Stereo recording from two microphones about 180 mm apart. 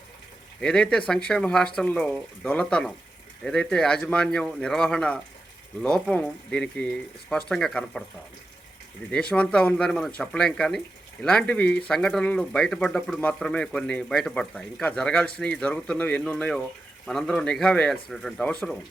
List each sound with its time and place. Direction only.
0.6 s speech: 5° left (ahead or behind)
9.3 s speech: 5° left (ahead or behind)